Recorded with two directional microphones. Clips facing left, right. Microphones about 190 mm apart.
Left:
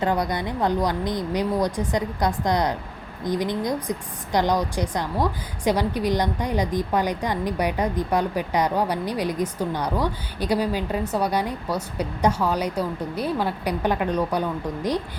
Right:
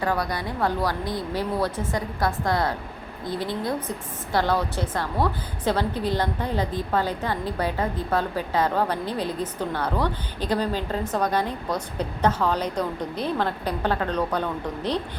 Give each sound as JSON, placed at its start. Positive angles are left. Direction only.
{"t": 0.0, "sound": "a woman's voice", "side_deg": 20}